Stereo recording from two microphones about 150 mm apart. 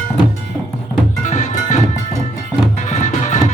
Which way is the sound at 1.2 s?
55° left (ahead or behind).